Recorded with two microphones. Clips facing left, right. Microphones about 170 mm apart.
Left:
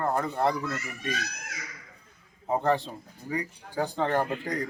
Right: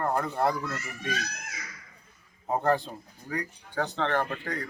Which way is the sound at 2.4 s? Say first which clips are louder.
Even; centre (ahead or behind).